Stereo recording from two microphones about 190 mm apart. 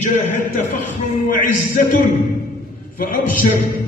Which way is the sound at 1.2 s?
45° left (ahead or behind).